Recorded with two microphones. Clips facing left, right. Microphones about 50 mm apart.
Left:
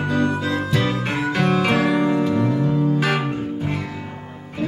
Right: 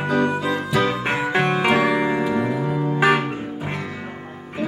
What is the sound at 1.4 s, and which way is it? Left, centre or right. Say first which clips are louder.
Keyboard: left 3 dB; right.